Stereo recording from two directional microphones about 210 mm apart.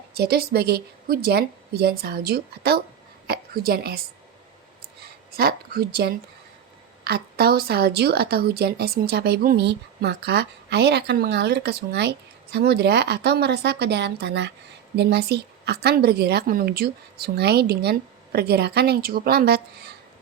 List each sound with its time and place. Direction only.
0.2 s a woman's voice: 50° right (ahead or behind)
5.4 s a woman's voice: 45° right (ahead or behind)